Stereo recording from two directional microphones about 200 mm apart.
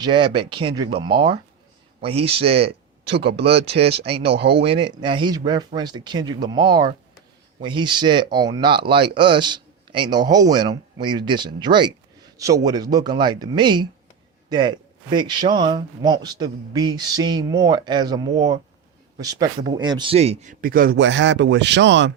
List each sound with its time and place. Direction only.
0.0 s speech: 25° right (ahead or behind)
3.1 s speech: 55° right (ahead or behind)
4.6 s speech: 25° right (ahead or behind); by 21.0 s 45° right (ahead or behind)
21.0 s speech: 65° right (ahead or behind)